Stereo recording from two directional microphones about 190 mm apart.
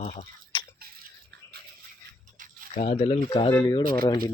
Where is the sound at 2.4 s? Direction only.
45° right (ahead or behind).